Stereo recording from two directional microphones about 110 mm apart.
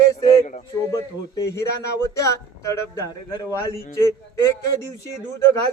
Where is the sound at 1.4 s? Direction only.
25° left (ahead or behind).